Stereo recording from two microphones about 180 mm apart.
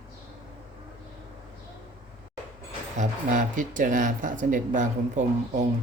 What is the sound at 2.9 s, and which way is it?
Speech, 45° right (ahead or behind).